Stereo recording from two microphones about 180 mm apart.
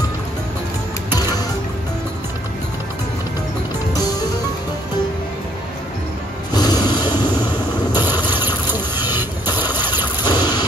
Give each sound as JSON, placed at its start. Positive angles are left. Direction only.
{"t": 6.5, "sound": "music", "side_deg": 20}
{"t": 8.3, "sound": "boat", "side_deg": -10}
{"t": 9.5, "sound": "a sound", "side_deg": 25}